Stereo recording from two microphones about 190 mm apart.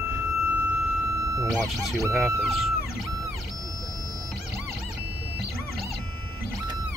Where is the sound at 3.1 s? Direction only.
15° right (ahead or behind).